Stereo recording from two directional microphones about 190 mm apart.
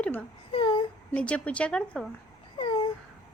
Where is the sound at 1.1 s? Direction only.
5° left (ahead or behind).